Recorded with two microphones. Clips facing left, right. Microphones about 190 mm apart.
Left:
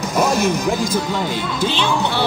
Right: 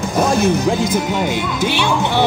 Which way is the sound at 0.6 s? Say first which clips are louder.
Right 3 dB; 25° right (ahead or behind).